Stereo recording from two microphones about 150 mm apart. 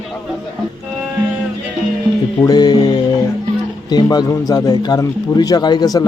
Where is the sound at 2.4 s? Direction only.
25° left (ahead or behind).